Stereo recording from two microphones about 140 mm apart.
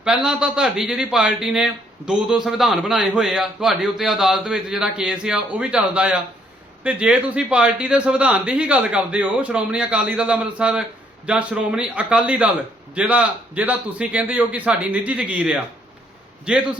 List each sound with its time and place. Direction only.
0.0 s a man's voice: 5° right (ahead or behind)